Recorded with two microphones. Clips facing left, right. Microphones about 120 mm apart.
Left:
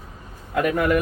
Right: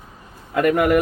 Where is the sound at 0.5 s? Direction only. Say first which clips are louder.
Right 4 dB; 65° right (ahead or behind).